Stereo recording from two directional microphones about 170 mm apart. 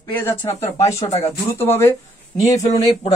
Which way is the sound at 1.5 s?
15° left (ahead or behind).